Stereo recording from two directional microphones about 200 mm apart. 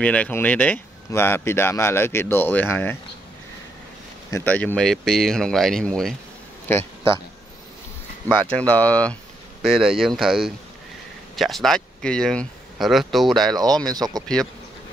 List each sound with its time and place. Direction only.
0.0 s speech: 5° left (ahead or behind)
4.3 s speech: 10° left (ahead or behind)
8.3 s speech: 5° left (ahead or behind)
13.6 s speech: 20° right (ahead or behind)